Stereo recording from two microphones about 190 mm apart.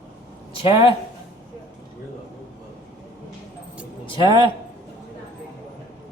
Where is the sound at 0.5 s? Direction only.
30° left (ahead or behind).